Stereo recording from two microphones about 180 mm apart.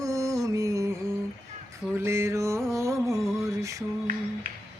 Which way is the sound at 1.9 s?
15° right (ahead or behind).